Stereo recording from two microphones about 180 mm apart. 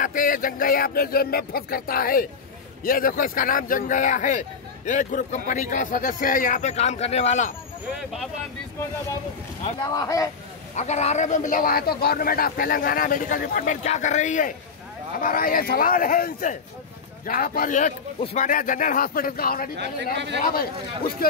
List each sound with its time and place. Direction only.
0.0 s speech: 50° left (ahead or behind)
9.9 s speech: 20° left (ahead or behind)
10.8 s speech: 40° left (ahead or behind); by 19.7 s 55° left (ahead or behind)
20.2 s speech: 75° right (ahead or behind)